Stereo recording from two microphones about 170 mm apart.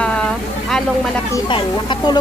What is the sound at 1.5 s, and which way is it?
Speech, 25° left (ahead or behind).